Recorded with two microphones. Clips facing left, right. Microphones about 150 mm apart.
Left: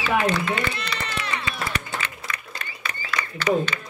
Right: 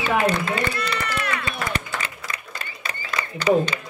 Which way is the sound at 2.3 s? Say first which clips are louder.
Even; 30° right (ahead or behind).